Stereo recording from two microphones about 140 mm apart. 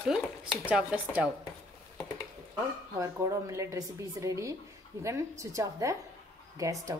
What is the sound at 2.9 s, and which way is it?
Speech, 25° right (ahead or behind).